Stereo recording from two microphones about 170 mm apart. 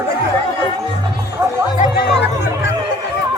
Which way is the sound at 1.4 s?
15° right (ahead or behind).